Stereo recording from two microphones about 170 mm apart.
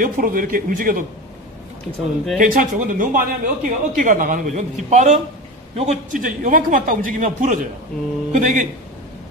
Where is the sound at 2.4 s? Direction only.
55° right (ahead or behind).